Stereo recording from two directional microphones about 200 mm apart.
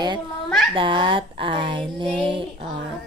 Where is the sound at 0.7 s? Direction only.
25° right (ahead or behind).